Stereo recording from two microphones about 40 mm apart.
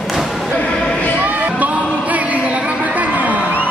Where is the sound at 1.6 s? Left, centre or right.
Right.